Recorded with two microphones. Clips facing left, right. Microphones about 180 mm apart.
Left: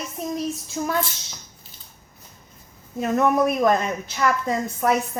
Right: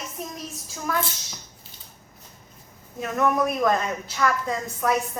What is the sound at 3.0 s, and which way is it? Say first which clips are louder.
A woman's voice: left 4 dB; 30° left (ahead or behind).